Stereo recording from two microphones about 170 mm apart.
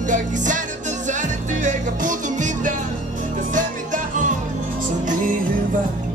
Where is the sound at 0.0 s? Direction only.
45° right (ahead or behind).